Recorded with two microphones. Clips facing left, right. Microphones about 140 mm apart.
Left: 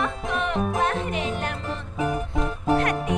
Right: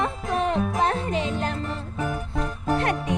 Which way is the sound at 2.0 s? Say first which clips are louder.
Left 3 dB; centre (ahead or behind).